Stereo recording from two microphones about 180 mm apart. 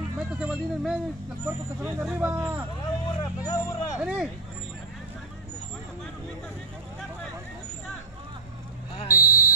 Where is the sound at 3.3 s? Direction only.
20° left (ahead or behind).